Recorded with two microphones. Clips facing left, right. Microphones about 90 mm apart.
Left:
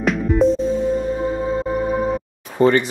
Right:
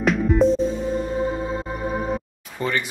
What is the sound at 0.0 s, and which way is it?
Music, centre (ahead or behind).